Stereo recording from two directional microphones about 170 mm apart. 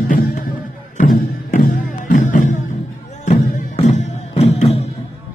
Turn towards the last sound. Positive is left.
turn(degrees=40)  # may be behind; listen again after turning